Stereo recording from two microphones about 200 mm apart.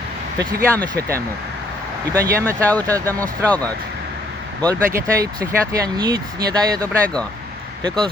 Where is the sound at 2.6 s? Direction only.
5° left (ahead or behind).